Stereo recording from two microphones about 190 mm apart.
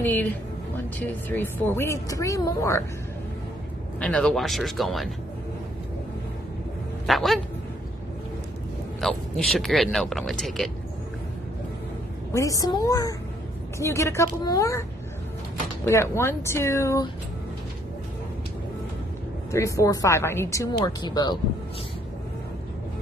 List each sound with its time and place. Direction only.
0.0 s speech: 10° left (ahead or behind)
4.0 s speech: 5° left (ahead or behind)
7.1 s speech: centre (ahead or behind)
9.0 s speech: centre (ahead or behind)
12.3 s speech: 15° left (ahead or behind)
19.5 s speech: 15° left (ahead or behind)